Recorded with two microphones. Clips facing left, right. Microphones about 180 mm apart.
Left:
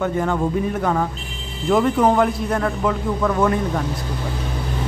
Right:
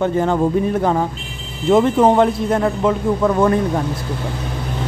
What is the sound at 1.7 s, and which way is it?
A man's voice, 25° right (ahead or behind).